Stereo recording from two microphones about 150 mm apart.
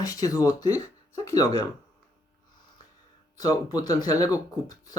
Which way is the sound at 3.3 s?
25° left (ahead or behind).